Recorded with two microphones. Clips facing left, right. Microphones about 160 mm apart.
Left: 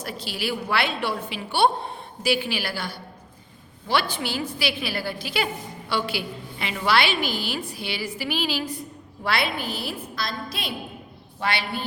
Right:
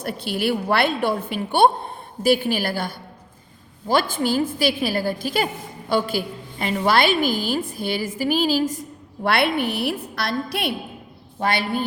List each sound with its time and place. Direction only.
0.0 s a woman's voice: 55° right (ahead or behind)
9.2 s a woman's voice: 60° right (ahead or behind)
11.3 s a woman's voice: 45° right (ahead or behind)